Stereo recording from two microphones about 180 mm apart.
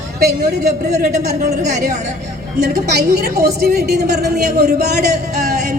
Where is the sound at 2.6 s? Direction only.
60° right (ahead or behind).